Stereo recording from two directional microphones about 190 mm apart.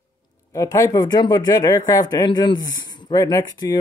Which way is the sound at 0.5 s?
20° left (ahead or behind).